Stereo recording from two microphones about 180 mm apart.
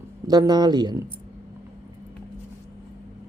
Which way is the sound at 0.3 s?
20° right (ahead or behind).